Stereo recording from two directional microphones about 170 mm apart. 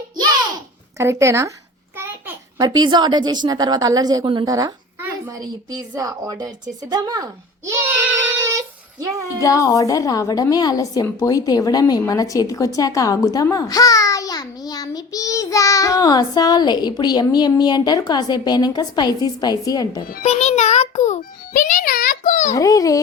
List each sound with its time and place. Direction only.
0.9 s a woman's voice: 15° right (ahead or behind)
6.9 s a sound: 25° right (ahead or behind)
9.4 s a woman's voice: 20° left (ahead or behind)
20.2 s a child's voice: 40° left (ahead or behind)
22.5 s a woman's voice: 20° left (ahead or behind)